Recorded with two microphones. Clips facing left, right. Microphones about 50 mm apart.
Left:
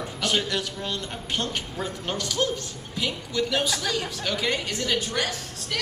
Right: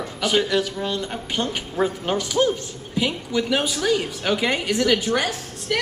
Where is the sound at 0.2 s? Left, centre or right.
Centre.